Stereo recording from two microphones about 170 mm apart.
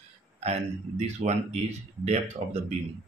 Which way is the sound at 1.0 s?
40° right (ahead or behind).